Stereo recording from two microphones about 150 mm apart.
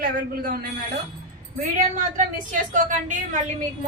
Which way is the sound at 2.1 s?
60° right (ahead or behind).